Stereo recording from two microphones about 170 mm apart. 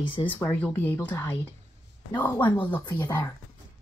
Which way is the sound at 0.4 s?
10° left (ahead or behind).